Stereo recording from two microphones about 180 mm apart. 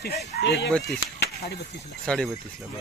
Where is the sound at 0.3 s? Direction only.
65° left (ahead or behind).